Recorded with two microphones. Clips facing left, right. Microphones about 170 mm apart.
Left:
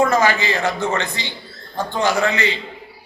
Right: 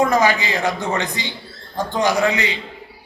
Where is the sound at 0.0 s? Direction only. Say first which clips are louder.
Even; 15° right (ahead or behind).